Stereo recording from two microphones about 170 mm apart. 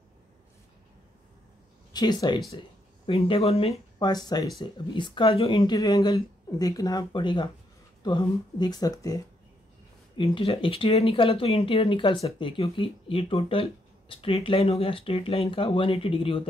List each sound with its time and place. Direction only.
1.9 s speech: 25° left (ahead or behind)
10.1 s speech: 30° left (ahead or behind)